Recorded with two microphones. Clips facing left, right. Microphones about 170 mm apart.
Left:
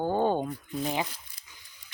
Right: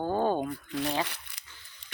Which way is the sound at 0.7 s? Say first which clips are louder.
Even; 80° right.